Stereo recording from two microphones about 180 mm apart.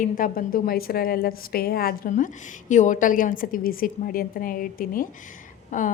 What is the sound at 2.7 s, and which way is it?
A woman's voice, 45° left (ahead or behind).